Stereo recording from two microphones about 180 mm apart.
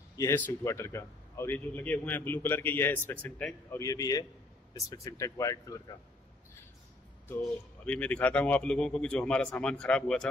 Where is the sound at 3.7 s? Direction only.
20° left (ahead or behind).